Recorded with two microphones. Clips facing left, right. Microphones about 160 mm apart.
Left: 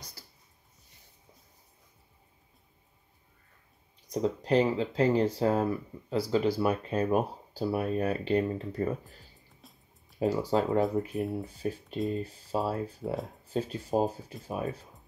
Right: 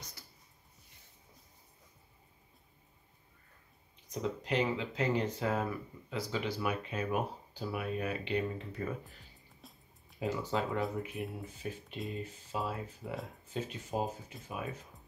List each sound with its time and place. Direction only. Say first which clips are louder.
4.1 s speech: left 8 dB; 35° left (ahead or behind)
9.6 s music: right 1 dB; centre (ahead or behind)
10.1 s speech: left 7 dB; 35° left (ahead or behind)